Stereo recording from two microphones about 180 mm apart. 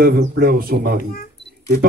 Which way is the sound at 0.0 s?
55° right (ahead or behind).